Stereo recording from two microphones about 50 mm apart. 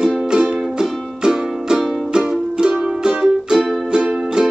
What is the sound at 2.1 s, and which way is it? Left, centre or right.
Music, centre.